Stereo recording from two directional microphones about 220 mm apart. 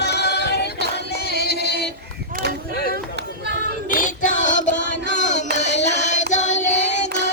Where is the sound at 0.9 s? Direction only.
45° left (ahead or behind).